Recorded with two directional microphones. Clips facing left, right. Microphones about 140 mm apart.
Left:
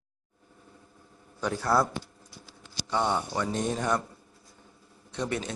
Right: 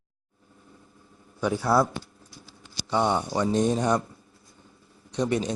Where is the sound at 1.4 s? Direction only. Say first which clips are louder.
Right 3 dB; 10° right (ahead or behind).